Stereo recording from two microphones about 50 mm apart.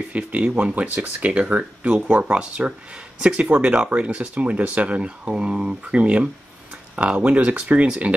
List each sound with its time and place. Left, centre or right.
0.1 s speech: right